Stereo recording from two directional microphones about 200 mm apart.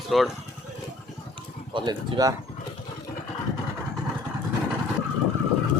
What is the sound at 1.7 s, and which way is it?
Speech, 20° right (ahead or behind).